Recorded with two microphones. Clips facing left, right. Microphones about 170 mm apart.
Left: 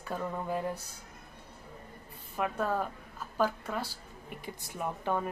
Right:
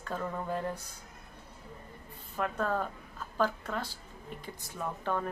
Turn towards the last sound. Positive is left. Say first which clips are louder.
# left 1 dB
turn(degrees=15)  # may be behind; listen again after turning